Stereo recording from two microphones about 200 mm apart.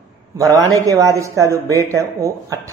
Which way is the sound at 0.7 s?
15° right (ahead or behind).